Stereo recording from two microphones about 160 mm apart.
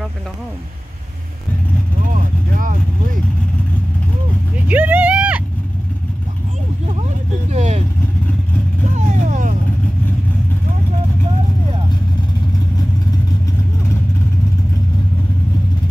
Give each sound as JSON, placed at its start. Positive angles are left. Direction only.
{"t": 2.0, "sound": "vehicle", "side_deg": -60}
{"t": 4.6, "sound": "vehicle", "side_deg": -10}
{"t": 7.5, "sound": "vehicle", "side_deg": -45}
{"t": 8.9, "sound": "vehicle", "side_deg": -50}